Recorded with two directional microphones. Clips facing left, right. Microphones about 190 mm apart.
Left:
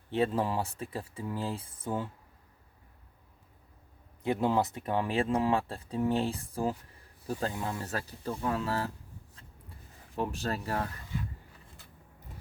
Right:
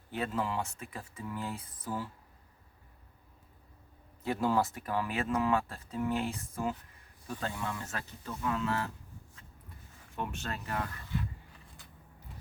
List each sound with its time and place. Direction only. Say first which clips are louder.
0.1 s speech: left 5 dB; 30° left (ahead or behind)
4.2 s speech: left 2 dB; 20° left (ahead or behind)
10.2 s speech: left 5 dB; 35° left (ahead or behind)